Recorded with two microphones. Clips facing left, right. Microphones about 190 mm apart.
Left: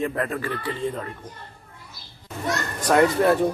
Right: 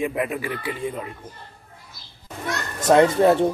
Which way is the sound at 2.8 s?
25° right (ahead or behind).